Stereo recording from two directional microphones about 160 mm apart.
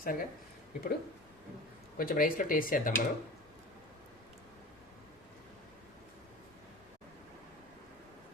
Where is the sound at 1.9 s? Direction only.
65° left (ahead or behind).